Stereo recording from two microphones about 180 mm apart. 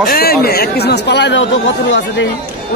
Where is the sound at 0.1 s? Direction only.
60° left (ahead or behind); by 1.6 s 80° left.